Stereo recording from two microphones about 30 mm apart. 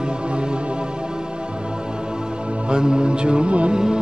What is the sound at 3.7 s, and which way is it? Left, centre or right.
Music, right.